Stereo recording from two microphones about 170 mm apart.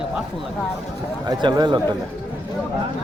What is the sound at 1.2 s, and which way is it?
Speech, 25° right (ahead or behind).